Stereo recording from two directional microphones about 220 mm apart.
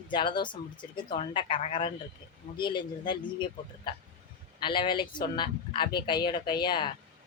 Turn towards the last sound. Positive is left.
turn(degrees=20)  # may be behind; listen again after turning